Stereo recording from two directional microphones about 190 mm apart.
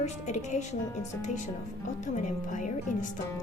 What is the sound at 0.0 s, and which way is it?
Speech, 35° left (ahead or behind).